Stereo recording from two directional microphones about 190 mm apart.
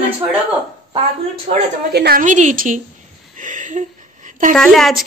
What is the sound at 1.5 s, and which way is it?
Speech, 40° right (ahead or behind).